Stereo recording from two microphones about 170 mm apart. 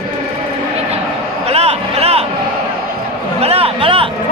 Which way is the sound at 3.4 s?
35° right (ahead or behind).